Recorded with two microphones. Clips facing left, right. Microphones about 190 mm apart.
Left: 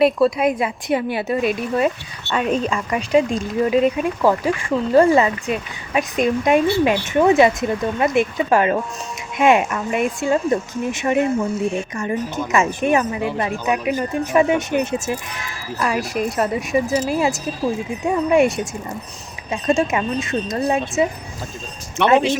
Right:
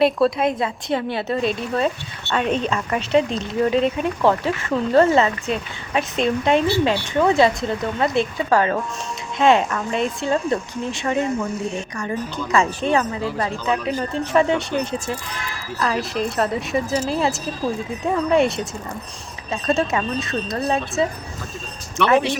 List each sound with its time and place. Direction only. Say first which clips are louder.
0.0 s speech: left 2 dB; 5° left (ahead or behind); by 22.4 s 20° left (ahead or behind)